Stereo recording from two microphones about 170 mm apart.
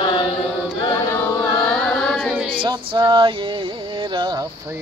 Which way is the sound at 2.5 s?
30° right (ahead or behind).